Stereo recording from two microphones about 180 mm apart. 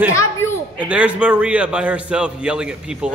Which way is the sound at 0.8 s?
5° right (ahead or behind).